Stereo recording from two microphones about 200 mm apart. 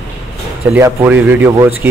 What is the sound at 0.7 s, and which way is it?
Speech, 10° right (ahead or behind).